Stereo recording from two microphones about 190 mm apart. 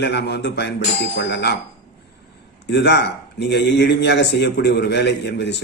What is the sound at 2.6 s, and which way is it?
A man's voice, 65° left (ahead or behind).